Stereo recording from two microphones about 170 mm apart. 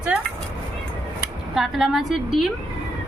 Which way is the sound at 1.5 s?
Centre (ahead or behind).